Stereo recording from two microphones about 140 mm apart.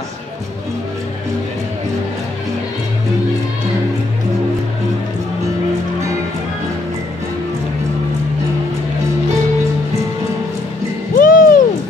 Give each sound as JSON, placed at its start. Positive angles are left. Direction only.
{"t": 11.1, "sound": "music", "side_deg": 80}